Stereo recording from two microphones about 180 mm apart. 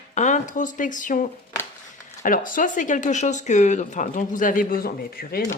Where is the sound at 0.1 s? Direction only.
40° left (ahead or behind).